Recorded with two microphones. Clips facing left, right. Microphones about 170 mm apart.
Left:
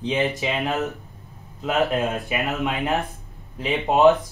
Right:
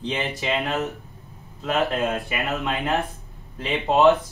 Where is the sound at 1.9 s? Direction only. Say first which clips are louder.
Left 1 dB; 20° left (ahead or behind).